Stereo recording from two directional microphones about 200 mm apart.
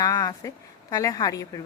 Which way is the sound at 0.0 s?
15° left (ahead or behind).